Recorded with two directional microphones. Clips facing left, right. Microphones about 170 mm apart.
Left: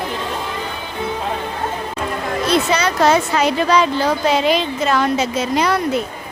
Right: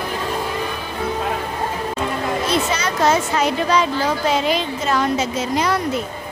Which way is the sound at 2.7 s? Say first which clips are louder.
Left 3 dB; 65° left (ahead or behind).